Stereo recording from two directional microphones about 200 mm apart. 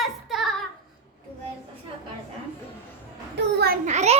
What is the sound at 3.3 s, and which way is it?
Speech, 55° right (ahead or behind).